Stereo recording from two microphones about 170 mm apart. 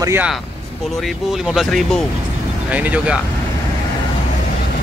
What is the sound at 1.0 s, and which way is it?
Speech, centre (ahead or behind).